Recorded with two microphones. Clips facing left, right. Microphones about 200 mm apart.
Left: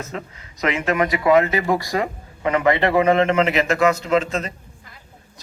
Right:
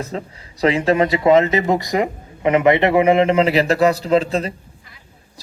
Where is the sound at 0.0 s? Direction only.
30° right (ahead or behind).